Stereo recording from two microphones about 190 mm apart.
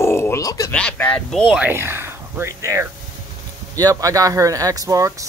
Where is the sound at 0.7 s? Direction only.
5° left (ahead or behind).